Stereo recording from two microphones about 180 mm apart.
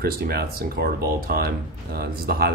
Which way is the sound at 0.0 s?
60° right (ahead or behind).